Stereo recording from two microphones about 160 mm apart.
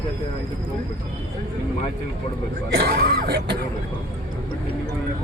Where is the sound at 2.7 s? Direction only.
75° right (ahead or behind).